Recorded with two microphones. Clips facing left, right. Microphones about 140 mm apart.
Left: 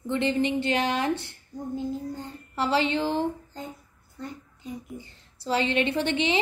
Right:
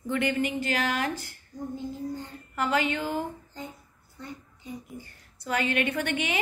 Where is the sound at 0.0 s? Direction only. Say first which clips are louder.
Left 2 dB; 25° left (ahead or behind).